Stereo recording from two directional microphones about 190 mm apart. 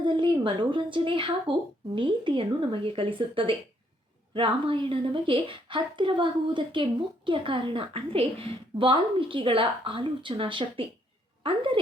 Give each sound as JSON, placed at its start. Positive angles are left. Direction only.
{"t": 0.0, "sound": "a woman's voice", "side_deg": -25}